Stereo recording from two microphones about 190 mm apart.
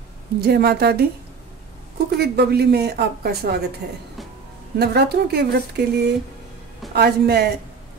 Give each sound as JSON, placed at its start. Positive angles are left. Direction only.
{"t": 0.4, "sound": "a woman's voice", "side_deg": -55}
{"t": 2.1, "sound": "a woman's voice", "side_deg": -55}
{"t": 4.7, "sound": "a woman's voice", "side_deg": -60}